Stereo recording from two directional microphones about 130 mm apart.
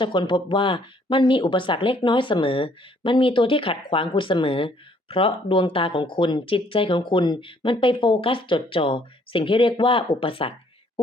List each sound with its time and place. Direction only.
0.0 s speech: 40° left (ahead or behind)